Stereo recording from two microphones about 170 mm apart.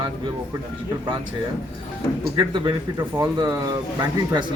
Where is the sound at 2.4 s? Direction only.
30° right (ahead or behind).